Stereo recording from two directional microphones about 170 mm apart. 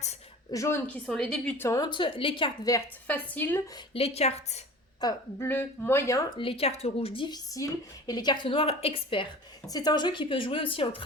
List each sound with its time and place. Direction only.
0.5 s a woman's voice: 15° left (ahead or behind)
0.9 s a woman's voice: 5° left (ahead or behind); by 2.5 s 30° left (ahead or behind)
2.6 s a woman's voice: 15° left (ahead or behind)
3.9 s a woman's voice: 35° left (ahead or behind)
4.9 s a woman's voice: 25° left (ahead or behind)
5.5 s a woman's voice: 10° left (ahead or behind)
6.4 s a woman's voice: 35° left (ahead or behind)